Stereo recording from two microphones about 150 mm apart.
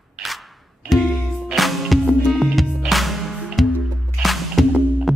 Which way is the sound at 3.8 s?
Centre (ahead or behind).